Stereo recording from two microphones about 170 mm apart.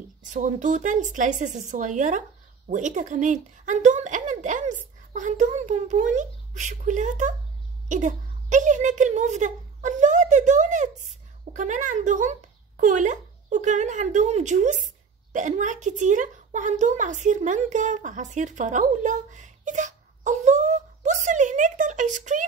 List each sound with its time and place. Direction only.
0.3 s a woman's voice: 45° right (ahead or behind)